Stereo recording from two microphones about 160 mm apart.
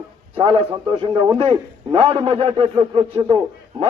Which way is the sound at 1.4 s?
30° right (ahead or behind).